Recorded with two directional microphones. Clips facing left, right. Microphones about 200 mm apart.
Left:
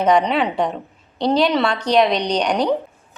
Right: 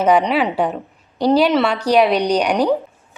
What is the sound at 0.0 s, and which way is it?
A woman's voice, 5° right (ahead or behind).